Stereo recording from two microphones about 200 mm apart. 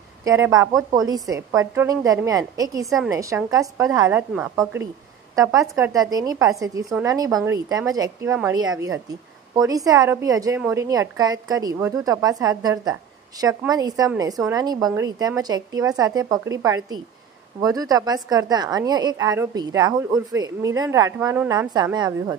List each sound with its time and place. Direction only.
0.2 s a woman's voice: 15° right (ahead or behind)
5.3 s a woman's voice: 15° right (ahead or behind)